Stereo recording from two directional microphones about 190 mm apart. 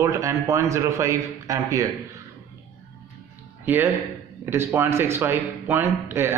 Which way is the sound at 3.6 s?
10° right (ahead or behind).